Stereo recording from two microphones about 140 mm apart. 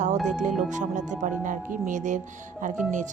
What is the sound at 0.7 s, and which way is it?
Speech, 60° right (ahead or behind).